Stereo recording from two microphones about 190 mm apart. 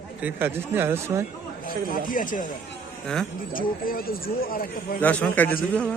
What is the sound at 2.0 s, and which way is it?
Speech, 45° left (ahead or behind).